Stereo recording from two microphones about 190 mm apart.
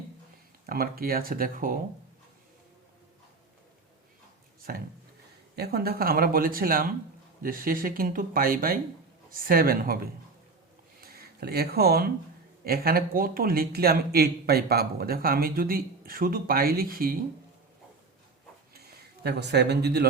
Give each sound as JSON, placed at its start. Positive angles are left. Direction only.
{"t": 0.7, "sound": "a man's voice", "side_deg": -50}
{"t": 4.7, "sound": "a man's voice", "side_deg": -50}
{"t": 18.7, "sound": "speech", "side_deg": -60}